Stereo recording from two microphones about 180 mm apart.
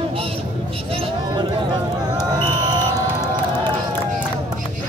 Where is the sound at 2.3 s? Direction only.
20° right (ahead or behind).